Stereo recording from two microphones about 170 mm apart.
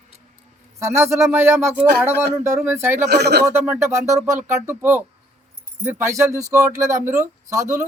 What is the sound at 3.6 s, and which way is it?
Speech, 15° right (ahead or behind).